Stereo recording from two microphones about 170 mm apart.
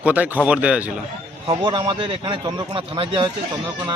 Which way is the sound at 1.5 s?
30° right (ahead or behind).